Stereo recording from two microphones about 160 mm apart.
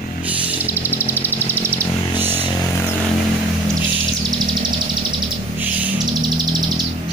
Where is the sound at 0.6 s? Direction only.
15° left (ahead or behind).